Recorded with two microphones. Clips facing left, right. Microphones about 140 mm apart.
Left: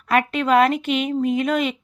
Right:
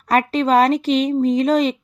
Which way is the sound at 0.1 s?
35° right (ahead or behind).